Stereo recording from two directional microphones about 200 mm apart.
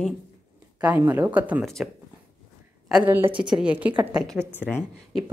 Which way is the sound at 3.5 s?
5° right (ahead or behind).